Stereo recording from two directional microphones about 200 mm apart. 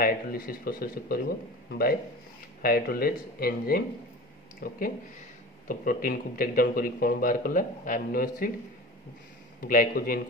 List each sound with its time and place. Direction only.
0.0 s speech: 45° left (ahead or behind)
9.6 s speech: 45° left (ahead or behind)